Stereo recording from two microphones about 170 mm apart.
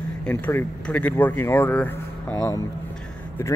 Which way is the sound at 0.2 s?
10° left (ahead or behind).